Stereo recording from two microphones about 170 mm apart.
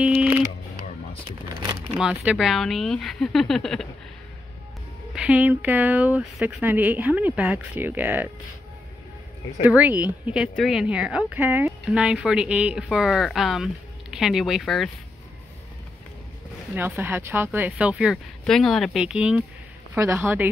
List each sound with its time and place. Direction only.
0.0 s music: 5° right (ahead or behind)
1.6 s a sound: 25° right (ahead or behind)
2.0 s speech: 5° right (ahead or behind)
5.1 s speech: 10° right (ahead or behind)
9.6 s speech: 10° right (ahead or behind)
16.7 s speech: 10° right (ahead or behind)